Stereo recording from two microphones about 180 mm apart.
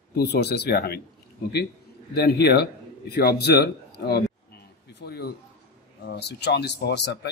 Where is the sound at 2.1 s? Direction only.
60° left (ahead or behind).